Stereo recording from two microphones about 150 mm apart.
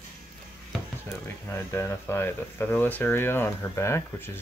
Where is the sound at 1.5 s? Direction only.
15° left (ahead or behind).